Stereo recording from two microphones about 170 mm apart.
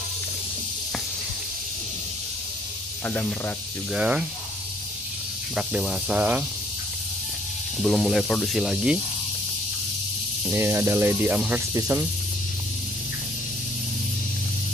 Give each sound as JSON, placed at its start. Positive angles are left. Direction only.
{"t": 3.1, "sound": "speech", "side_deg": 10}
{"t": 3.9, "sound": "speech", "side_deg": -5}
{"t": 5.6, "sound": "speech", "side_deg": -5}
{"t": 7.8, "sound": "speech", "side_deg": 0}
{"t": 10.5, "sound": "speech", "side_deg": -10}